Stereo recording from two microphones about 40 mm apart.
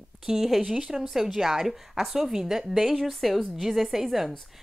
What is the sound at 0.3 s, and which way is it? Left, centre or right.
Speech, centre.